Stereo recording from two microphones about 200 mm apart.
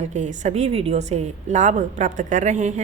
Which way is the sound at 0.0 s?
35° right (ahead or behind).